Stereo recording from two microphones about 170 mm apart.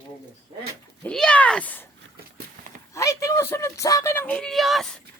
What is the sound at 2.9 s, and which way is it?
Speech, 20° left (ahead or behind).